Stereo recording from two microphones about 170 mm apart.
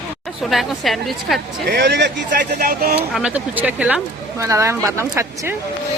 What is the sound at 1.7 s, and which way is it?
Speech, 70° right (ahead or behind).